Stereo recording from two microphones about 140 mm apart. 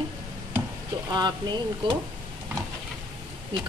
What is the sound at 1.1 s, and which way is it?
Speech, 30° right (ahead or behind).